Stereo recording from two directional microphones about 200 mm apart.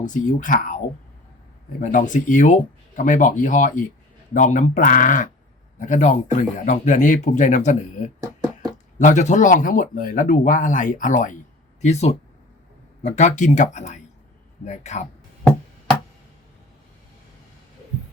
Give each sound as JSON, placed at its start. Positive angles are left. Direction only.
{"t": 0.0, "sound": "speech", "side_deg": 40}
{"t": 1.8, "sound": "speech", "side_deg": 40}